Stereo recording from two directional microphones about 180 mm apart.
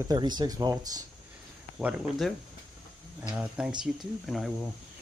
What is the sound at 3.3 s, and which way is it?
Speech, 5° right (ahead or behind).